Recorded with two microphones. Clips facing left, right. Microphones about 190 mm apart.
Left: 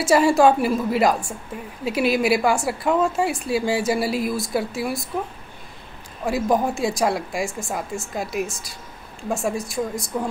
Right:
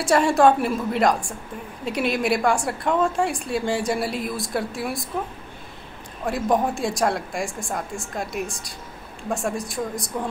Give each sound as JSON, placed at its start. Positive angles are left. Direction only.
{"t": 0.0, "sound": "a woman's voice", "side_deg": 5}
{"t": 6.2, "sound": "a woman's voice", "side_deg": 0}